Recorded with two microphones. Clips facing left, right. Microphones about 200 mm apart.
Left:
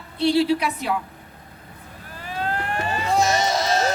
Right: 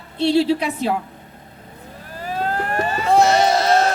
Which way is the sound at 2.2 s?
40° right (ahead or behind).